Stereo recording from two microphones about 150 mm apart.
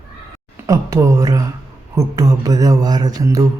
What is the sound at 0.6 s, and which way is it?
Speech, 20° right (ahead or behind).